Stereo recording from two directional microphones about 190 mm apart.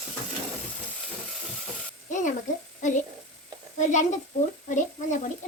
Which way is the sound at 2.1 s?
40° left (ahead or behind).